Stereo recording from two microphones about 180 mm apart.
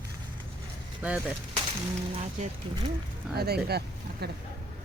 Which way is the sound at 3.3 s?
60° right (ahead or behind).